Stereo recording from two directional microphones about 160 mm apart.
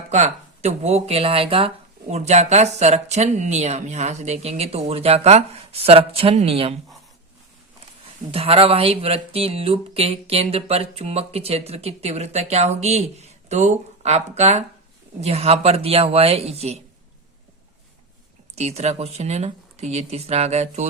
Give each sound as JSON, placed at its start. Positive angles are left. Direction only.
{"t": 0.1, "sound": "speech", "side_deg": -45}
{"t": 8.3, "sound": "speech", "side_deg": -35}
{"t": 18.5, "sound": "speech", "side_deg": -40}